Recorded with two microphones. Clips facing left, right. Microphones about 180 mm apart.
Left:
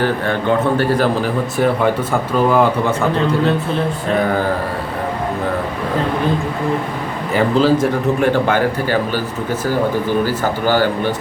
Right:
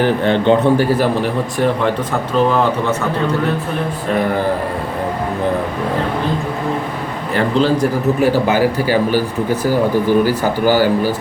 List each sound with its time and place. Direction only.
0.0 s a man's voice: 20° right (ahead or behind)
7.3 s a man's voice: 5° left (ahead or behind)